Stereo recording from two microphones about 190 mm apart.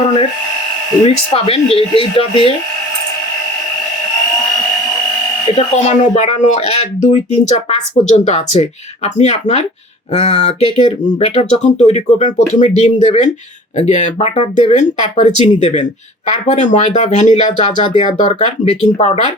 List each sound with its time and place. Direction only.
0.0 s electric toothbrush: 35° left (ahead or behind)
1.0 s speech: 30° left (ahead or behind)
5.5 s speech: 35° left (ahead or behind)